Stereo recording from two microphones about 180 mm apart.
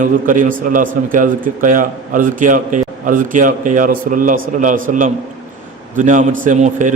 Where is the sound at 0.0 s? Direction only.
50° right (ahead or behind).